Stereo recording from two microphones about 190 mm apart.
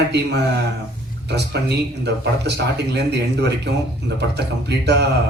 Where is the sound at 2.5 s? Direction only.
60° right (ahead or behind).